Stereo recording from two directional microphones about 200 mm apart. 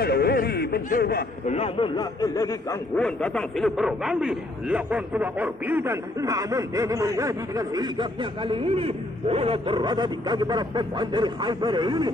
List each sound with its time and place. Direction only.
0.0 s a sound: 50° left (ahead or behind)
1.5 s speech: 30° left (ahead or behind)
3.0 s a man's voice: 5° left (ahead or behind); by 12.1 s 20° right (ahead or behind)